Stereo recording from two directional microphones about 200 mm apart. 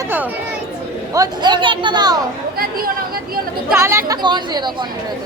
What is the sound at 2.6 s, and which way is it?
Speech, 45° right (ahead or behind).